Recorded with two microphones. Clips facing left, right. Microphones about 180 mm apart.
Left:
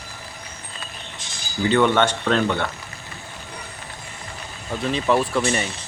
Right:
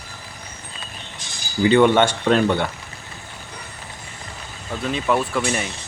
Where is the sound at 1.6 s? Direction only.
15° right (ahead or behind).